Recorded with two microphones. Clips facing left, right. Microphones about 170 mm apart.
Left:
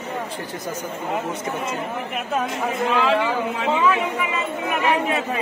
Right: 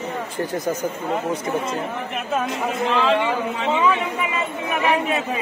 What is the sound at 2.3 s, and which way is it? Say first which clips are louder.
Speech: even; 5° left (ahead or behind).